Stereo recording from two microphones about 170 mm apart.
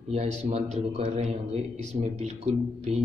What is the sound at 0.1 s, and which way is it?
A man's voice, 40° right (ahead or behind).